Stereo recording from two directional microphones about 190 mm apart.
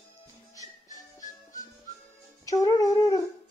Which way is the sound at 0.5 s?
20° left (ahead or behind).